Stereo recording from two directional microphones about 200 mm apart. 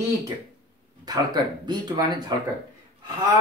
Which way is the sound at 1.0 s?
20° right (ahead or behind).